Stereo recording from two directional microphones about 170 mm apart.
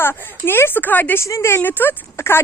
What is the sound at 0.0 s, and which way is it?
A woman's voice, 15° left (ahead or behind).